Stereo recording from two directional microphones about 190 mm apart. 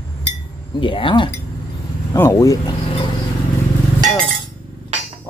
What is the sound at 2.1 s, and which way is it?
Speech, 15° left (ahead or behind).